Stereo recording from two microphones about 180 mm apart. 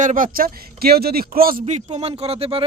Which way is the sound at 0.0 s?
50° right (ahead or behind).